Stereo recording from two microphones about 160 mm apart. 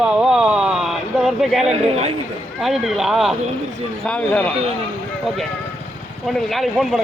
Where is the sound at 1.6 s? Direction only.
40° right (ahead or behind).